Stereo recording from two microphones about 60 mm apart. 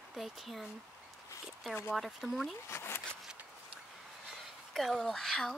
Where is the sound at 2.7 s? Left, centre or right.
Left.